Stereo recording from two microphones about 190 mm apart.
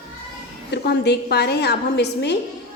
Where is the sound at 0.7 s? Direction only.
60° left (ahead or behind).